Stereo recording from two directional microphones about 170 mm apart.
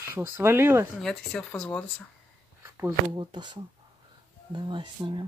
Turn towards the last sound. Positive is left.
turn(degrees=-30)  # may be behind; listen again after turning